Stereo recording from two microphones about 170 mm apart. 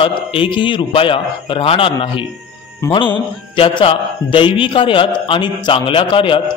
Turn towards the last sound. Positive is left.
turn(degrees=30)  # may be behind; listen again after turning